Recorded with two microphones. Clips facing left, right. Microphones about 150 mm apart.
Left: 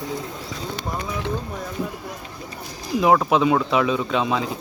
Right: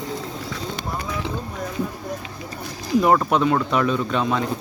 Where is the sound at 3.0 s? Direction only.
5° left (ahead or behind).